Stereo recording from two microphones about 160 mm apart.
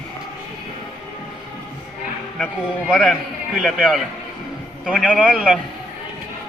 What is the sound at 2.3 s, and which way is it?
A man's voice, centre (ahead or behind).